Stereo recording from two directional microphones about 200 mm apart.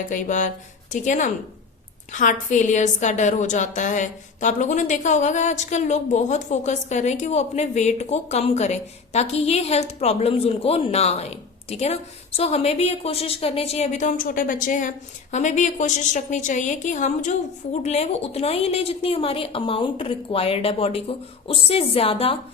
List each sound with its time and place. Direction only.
0.1 s a woman's voice: 40° left (ahead or behind)